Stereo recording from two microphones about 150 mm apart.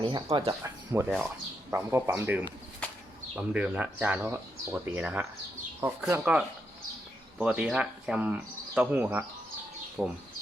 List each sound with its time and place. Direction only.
0.0 s speech: 30° right (ahead or behind)
1.0 s speech: 5° right (ahead or behind)
10.0 s speech: centre (ahead or behind)